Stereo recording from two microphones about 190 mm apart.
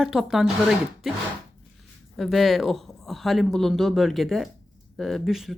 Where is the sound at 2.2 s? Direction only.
Centre (ahead or behind).